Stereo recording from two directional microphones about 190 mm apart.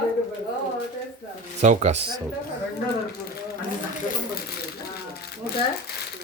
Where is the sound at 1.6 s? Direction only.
35° right (ahead or behind).